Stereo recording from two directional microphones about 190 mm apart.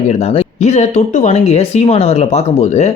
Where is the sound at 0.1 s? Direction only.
35° left (ahead or behind).